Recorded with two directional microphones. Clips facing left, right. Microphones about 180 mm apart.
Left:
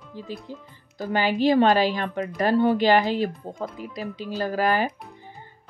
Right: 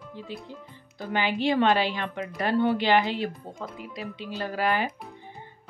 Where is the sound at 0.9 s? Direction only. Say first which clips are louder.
Left 4 dB; 40° left (ahead or behind).